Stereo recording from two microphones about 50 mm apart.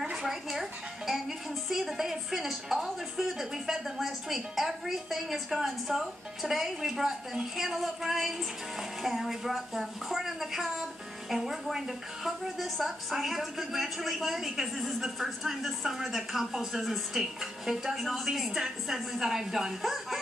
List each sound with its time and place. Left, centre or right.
0.0 s speech: centre